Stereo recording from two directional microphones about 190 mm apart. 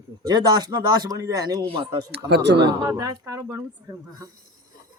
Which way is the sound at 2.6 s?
20° right (ahead or behind).